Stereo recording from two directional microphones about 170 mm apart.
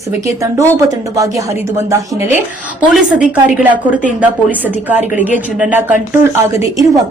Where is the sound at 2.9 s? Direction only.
5° right (ahead or behind).